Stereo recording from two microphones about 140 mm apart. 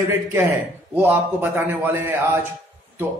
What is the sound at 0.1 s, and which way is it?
Speech, 15° right (ahead or behind).